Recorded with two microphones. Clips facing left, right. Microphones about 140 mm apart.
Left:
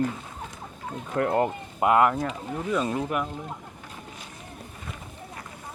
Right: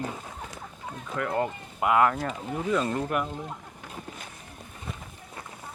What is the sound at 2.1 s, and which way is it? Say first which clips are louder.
Speech: left 1 dB; centre (ahead or behind).